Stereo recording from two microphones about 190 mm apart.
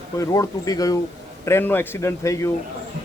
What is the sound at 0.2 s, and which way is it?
A man's voice, 15° left (ahead or behind).